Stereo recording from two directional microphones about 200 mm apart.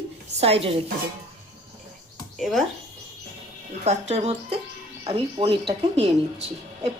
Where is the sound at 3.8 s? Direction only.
35° right (ahead or behind).